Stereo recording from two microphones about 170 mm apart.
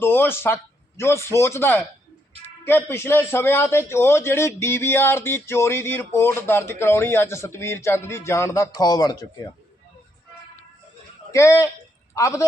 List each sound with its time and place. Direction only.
0.0 s a man's voice: 10° left (ahead or behind)
11.3 s a man's voice: 20° left (ahead or behind)